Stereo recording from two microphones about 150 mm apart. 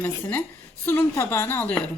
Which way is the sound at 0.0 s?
10° left (ahead or behind).